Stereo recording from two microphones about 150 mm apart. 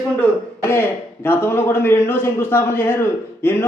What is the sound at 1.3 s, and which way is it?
A man's voice, 15° left (ahead or behind).